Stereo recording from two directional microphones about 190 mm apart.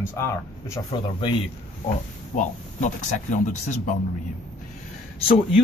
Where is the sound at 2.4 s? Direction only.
40° left (ahead or behind).